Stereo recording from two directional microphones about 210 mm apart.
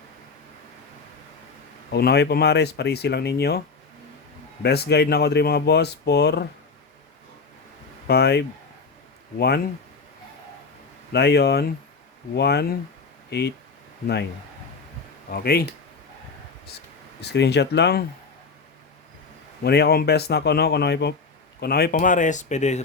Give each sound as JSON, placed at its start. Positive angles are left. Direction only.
{"t": 1.9, "sound": "speech", "side_deg": 50}
{"t": 4.6, "sound": "speech", "side_deg": 50}
{"t": 8.0, "sound": "speech", "side_deg": 50}
{"t": 11.1, "sound": "speech", "side_deg": 50}
{"t": 15.3, "sound": "speech", "side_deg": 45}
{"t": 17.2, "sound": "speech", "side_deg": 55}
{"t": 19.6, "sound": "speech", "side_deg": 50}